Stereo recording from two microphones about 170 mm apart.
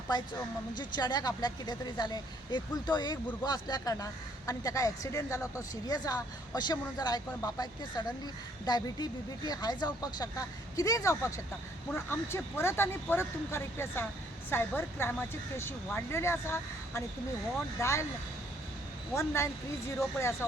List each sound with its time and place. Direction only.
0.8 s speech: 25° left (ahead or behind)
19.1 s speech: 15° left (ahead or behind)